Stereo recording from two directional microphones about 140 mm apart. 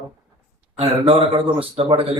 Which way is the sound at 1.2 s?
40° right (ahead or behind).